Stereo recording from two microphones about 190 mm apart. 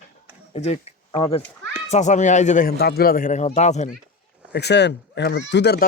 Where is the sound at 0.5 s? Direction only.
35° left (ahead or behind).